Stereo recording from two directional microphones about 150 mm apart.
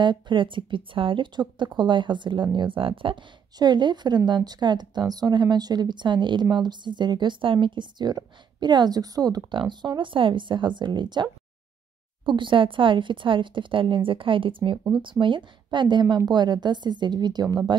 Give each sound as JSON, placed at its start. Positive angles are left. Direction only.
{"t": 0.0, "sound": "a woman's voice", "side_deg": -30}
{"t": 12.3, "sound": "a woman's voice", "side_deg": -35}